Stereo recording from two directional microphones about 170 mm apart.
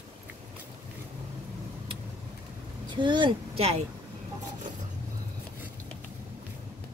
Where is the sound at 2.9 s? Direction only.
25° right (ahead or behind).